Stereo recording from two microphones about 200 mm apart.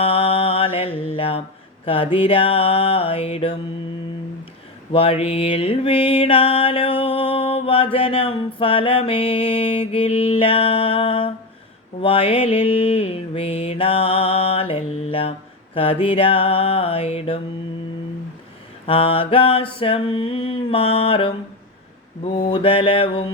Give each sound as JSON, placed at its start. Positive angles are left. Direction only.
{"t": 0.0, "sound": "mantra", "side_deg": 30}
{"t": 1.8, "sound": "a sound", "side_deg": 30}
{"t": 2.1, "sound": "mantra", "side_deg": 30}
{"t": 4.9, "sound": "mantra", "side_deg": 30}
{"t": 18.9, "sound": "mantra", "side_deg": 30}
{"t": 22.4, "sound": "mantra", "side_deg": 25}